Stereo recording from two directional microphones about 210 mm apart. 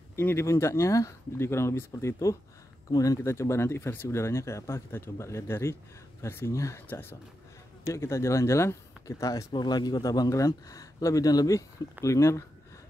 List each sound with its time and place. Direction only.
0.1 s speech: 10° left (ahead or behind)